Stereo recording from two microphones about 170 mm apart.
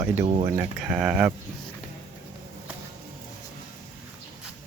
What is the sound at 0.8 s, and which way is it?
Speech, 5° right (ahead or behind).